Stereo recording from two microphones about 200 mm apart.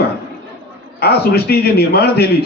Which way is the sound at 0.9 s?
50° left (ahead or behind).